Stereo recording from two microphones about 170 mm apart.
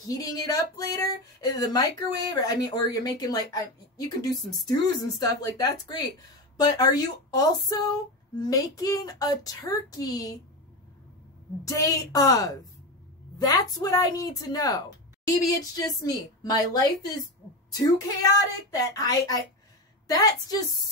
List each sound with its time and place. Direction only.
0.0 s speech: 20° left (ahead or behind)
11.6 s speech: 20° left (ahead or behind)
16.0 s speech: 20° left (ahead or behind)